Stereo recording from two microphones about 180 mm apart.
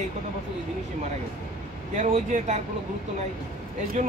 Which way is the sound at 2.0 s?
45° right (ahead or behind).